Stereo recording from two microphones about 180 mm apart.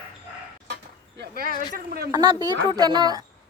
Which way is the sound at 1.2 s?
55° right (ahead or behind).